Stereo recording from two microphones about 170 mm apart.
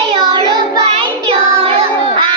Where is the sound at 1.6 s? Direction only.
35° right (ahead or behind).